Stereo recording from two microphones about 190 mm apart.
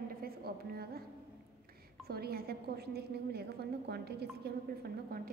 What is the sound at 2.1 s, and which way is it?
A woman's voice, 55° right (ahead or behind).